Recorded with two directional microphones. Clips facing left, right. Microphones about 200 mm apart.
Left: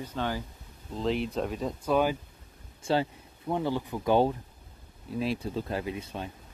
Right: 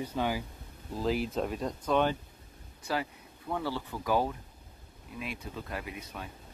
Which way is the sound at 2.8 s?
25° left (ahead or behind).